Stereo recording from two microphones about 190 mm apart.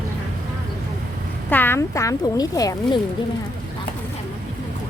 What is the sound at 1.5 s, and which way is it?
Speech, 10° left (ahead or behind).